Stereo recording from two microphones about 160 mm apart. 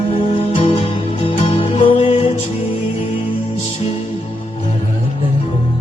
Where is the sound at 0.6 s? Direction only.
35° left (ahead or behind).